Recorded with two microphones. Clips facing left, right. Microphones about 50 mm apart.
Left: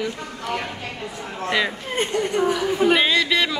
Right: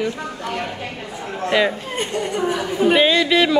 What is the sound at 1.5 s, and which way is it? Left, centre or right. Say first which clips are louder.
Speech: right 4 dB; centre.